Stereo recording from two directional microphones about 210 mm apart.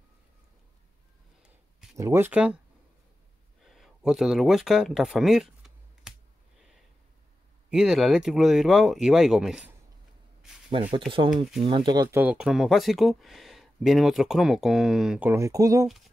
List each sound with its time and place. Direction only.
2.0 s speech: 10° right (ahead or behind)
3.6 s a sound: centre (ahead or behind)
7.7 s speech: centre (ahead or behind)
10.7 s speech: 25° right (ahead or behind)